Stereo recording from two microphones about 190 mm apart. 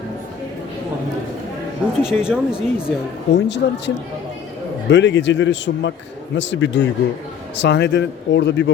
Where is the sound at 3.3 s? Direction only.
65° left (ahead or behind).